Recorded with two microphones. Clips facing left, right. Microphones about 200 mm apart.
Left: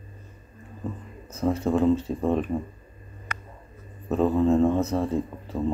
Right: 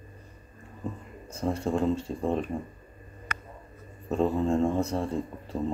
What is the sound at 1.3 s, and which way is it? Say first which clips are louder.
Speech: left 4 dB; centre (ahead or behind).